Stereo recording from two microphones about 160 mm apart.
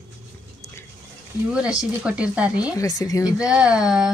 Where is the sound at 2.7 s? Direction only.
20° left (ahead or behind).